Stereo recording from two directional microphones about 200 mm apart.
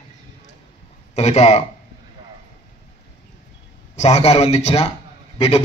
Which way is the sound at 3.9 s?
30° left (ahead or behind).